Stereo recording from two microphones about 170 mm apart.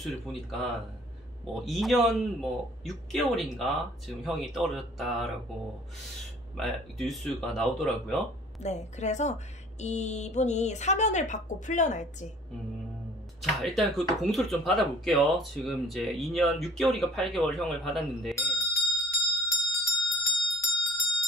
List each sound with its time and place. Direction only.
0.0 s speech: centre (ahead or behind)
6.5 s speech: centre (ahead or behind)
8.6 s a woman's voice: 40° left (ahead or behind)
13.4 s speech: centre (ahead or behind)
18.3 s bicycle bell: 20° left (ahead or behind)
18.9 s bell: 20° left (ahead or behind)